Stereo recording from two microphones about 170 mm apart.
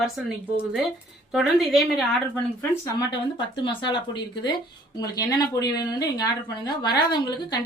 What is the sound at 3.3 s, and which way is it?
A woman's voice, 30° left (ahead or behind).